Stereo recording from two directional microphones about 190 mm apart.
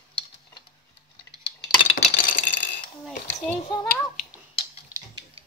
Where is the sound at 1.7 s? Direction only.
40° left (ahead or behind).